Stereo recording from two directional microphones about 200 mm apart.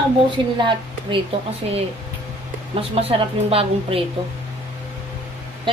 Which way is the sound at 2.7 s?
30° right (ahead or behind).